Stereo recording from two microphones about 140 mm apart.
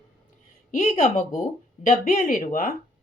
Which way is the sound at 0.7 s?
55° left (ahead or behind).